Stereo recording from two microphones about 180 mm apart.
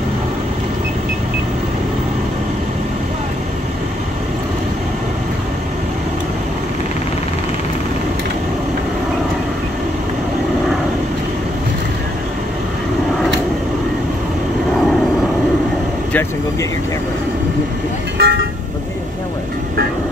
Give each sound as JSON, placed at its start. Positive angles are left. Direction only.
{"t": 18.1, "sound": "vehicle", "side_deg": -60}